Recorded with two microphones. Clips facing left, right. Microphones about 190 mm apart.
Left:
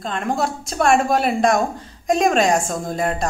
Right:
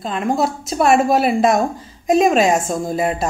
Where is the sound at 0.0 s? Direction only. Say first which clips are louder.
Right 3 dB; centre (ahead or behind).